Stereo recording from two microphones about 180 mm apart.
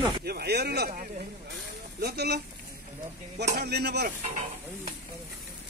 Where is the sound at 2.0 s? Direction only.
65° right (ahead or behind).